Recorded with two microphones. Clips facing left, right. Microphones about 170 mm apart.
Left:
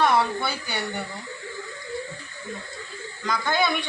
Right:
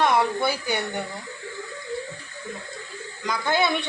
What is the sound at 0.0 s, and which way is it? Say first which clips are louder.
Speech: right 1 dB; 20° right (ahead or behind).